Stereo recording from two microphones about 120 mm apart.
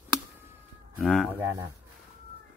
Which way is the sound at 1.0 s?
Centre (ahead or behind).